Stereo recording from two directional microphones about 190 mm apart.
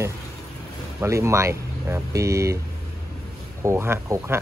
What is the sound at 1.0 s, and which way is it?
Speech, 15° right (ahead or behind).